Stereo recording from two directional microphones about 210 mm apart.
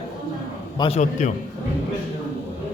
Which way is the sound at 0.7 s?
25° left (ahead or behind).